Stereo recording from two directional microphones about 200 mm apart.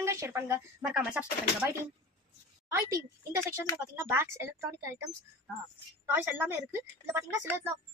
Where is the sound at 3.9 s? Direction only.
15° right (ahead or behind).